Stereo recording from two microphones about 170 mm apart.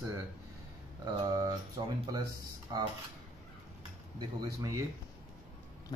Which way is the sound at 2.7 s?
25° right (ahead or behind).